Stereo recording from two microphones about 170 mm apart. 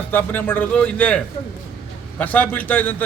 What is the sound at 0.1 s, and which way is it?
A man's voice, 10° left (ahead or behind).